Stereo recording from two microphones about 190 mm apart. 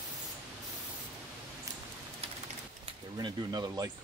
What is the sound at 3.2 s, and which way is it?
Speech, 20° right (ahead or behind).